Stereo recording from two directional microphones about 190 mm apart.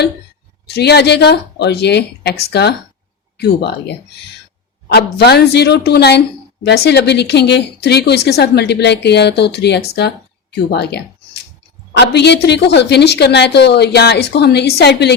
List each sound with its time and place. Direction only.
0.7 s a woman's voice: 60° left (ahead or behind)
4.9 s a woman's voice: 60° left (ahead or behind)